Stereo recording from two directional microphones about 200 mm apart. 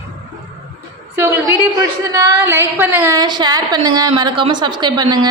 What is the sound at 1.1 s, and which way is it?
A woman's voice, 15° right (ahead or behind).